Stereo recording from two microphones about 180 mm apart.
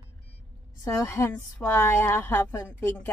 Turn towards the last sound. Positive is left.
turn(degrees=10)  # may be behind; listen again after turning